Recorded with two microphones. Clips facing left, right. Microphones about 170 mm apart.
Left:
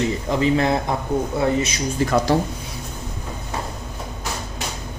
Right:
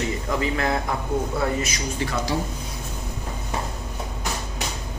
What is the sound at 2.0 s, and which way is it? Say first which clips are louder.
Speech: left 9 dB; 45° left (ahead or behind).